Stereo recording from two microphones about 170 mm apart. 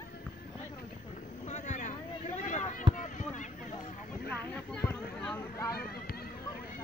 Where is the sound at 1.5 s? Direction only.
45° left (ahead or behind).